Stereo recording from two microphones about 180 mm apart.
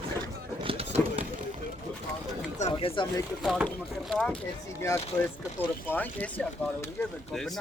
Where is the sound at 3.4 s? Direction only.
Centre (ahead or behind).